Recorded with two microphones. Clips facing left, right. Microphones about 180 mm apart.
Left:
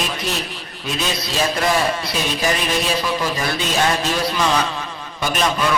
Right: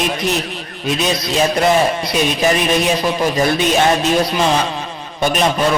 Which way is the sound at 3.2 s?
20° right (ahead or behind).